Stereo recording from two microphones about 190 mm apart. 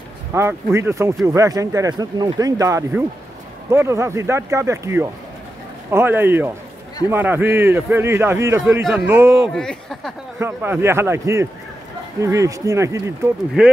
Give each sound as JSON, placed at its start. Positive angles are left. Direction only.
{"t": 0.3, "sound": "speech", "side_deg": -15}
{"t": 9.5, "sound": "speech", "side_deg": 0}
{"t": 10.4, "sound": "speech", "side_deg": -10}
{"t": 13.6, "sound": "speech", "side_deg": -5}